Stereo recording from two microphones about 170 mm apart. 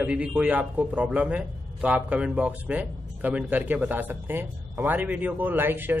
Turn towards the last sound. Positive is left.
turn(degrees=-10)  # may be behind; listen again after turning